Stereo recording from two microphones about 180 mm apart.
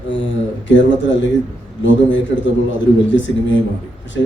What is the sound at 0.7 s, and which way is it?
A man's voice, 90° left.